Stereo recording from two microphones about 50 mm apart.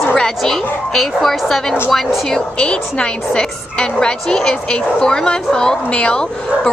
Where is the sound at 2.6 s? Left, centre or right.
Centre.